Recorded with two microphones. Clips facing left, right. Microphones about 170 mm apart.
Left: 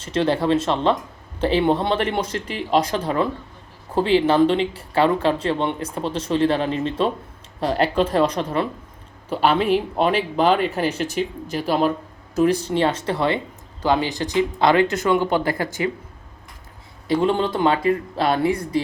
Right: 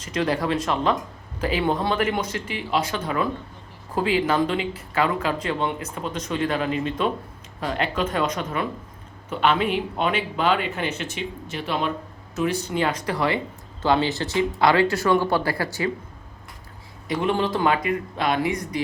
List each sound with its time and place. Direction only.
0.0 s speech: 30° left (ahead or behind)
17.1 s speech: 25° left (ahead or behind)